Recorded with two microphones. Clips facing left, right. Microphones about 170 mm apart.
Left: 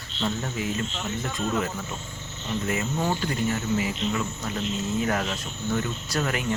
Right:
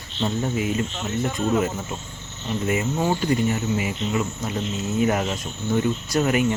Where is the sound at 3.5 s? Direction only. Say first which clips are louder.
Right 2 dB; 20° right (ahead or behind).